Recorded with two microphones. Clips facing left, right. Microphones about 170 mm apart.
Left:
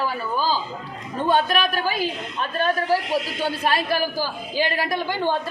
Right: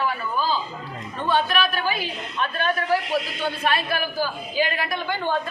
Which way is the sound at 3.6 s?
40° left (ahead or behind).